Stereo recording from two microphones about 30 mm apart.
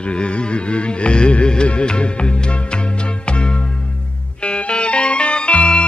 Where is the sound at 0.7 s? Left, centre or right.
Left.